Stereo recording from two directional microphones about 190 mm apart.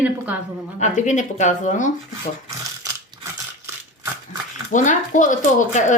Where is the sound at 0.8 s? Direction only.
40° left (ahead or behind).